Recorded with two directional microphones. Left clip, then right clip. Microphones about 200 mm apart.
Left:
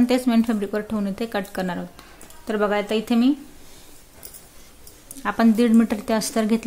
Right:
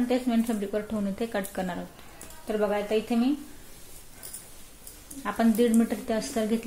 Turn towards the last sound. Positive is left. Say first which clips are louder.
# left 6 dB
turn(degrees=35)  # may be behind; listen again after turning